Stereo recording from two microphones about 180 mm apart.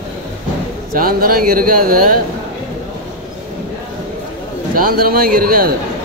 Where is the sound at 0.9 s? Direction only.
55° right (ahead or behind).